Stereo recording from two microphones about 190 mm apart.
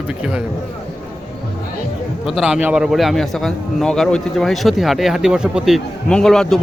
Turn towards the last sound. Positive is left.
turn(degrees=0)  # may be behind; listen again after turning